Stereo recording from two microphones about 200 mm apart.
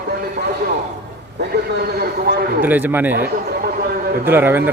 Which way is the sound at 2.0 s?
50° right (ahead or behind).